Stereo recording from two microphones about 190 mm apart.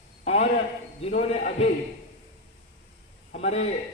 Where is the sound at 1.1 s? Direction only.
35° left (ahead or behind).